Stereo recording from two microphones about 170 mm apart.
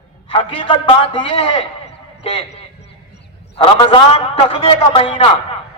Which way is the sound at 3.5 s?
30° left (ahead or behind).